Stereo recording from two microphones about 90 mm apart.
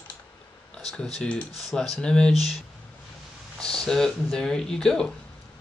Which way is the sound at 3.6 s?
5° left (ahead or behind).